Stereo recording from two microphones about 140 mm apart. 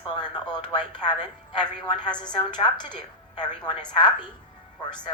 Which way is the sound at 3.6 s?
5° left (ahead or behind).